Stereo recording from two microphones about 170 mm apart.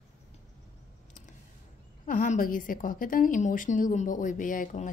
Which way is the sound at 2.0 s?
50° left (ahead or behind).